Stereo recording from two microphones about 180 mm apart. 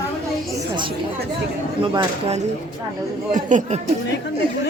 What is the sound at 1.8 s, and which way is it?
Speech, 25° right (ahead or behind).